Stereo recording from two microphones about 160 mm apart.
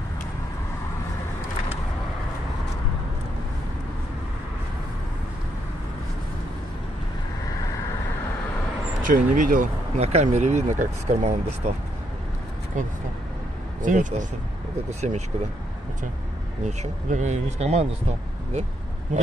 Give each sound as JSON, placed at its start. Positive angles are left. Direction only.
{"t": 9.0, "sound": "speech", "side_deg": -55}
{"t": 9.9, "sound": "speech", "side_deg": -40}
{"t": 12.7, "sound": "speech", "side_deg": -50}
{"t": 16.6, "sound": "speech", "side_deg": -45}